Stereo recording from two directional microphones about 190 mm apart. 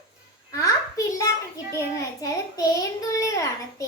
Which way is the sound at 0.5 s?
15° left (ahead or behind).